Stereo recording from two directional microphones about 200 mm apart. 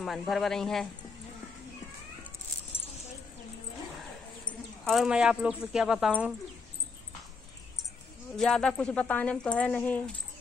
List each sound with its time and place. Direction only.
0.0 s speech: centre (ahead or behind)
4.8 s speech: centre (ahead or behind)
8.4 s speech: 5° left (ahead or behind)